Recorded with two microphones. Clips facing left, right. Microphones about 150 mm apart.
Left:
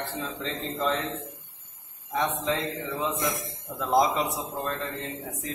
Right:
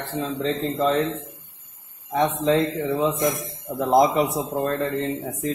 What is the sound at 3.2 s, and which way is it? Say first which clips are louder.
Speech: right 6 dB; 30° right (ahead or behind).